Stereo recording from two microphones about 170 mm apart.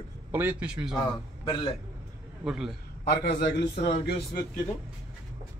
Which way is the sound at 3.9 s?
70° left (ahead or behind).